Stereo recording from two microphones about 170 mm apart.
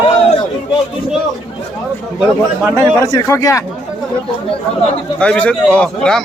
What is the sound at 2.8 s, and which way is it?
Speech, 20° left (ahead or behind).